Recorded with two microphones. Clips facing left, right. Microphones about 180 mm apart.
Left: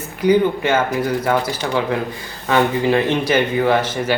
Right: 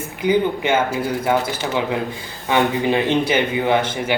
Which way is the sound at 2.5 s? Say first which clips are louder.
Left 2 dB; 15° right (ahead or behind).